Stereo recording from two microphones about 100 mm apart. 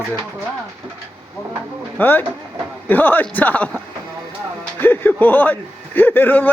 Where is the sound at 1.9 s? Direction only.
20° left (ahead or behind).